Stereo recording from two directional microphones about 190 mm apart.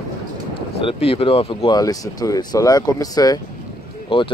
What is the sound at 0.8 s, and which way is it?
Speech, 30° left (ahead or behind).